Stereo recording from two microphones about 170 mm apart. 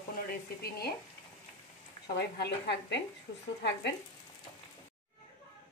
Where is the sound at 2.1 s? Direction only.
75° left (ahead or behind).